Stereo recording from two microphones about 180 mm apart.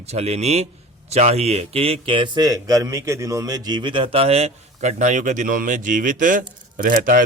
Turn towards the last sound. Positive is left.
turn(degrees=-50)  # may be behind; listen again after turning